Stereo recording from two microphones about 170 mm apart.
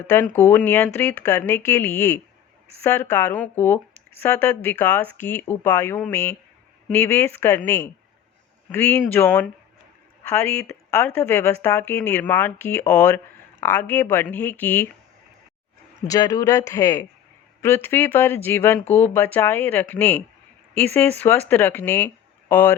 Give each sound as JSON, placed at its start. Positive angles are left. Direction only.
{"t": 0.0, "sound": "speech", "side_deg": 10}
{"t": 16.0, "sound": "speech", "side_deg": 20}